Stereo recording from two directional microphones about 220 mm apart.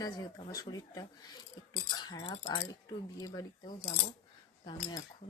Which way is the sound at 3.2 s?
15° left (ahead or behind).